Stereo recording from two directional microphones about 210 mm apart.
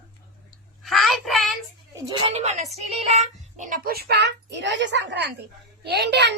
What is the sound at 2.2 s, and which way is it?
A woman's voice, 30° right (ahead or behind).